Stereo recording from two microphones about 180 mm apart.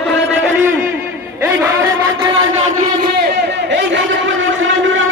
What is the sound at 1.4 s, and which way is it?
Speech, 10° right (ahead or behind).